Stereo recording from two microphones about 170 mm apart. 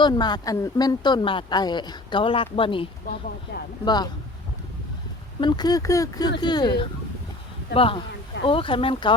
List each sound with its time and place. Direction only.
0.0 s speech: 25° left (ahead or behind)
3.5 s speech: 70° left (ahead or behind)
3.8 s speech: 25° left (ahead or behind)
5.4 s speech: 25° left (ahead or behind)